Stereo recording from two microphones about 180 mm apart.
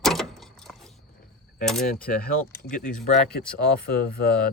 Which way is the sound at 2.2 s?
50° left (ahead or behind).